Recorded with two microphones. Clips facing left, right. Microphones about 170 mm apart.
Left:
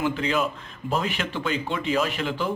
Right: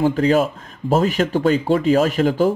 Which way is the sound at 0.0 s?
40° right (ahead or behind).